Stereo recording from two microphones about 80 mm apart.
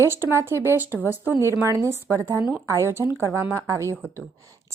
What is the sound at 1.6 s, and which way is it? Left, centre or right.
A woman's voice, right.